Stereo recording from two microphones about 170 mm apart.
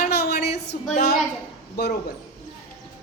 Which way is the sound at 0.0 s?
65° left (ahead or behind).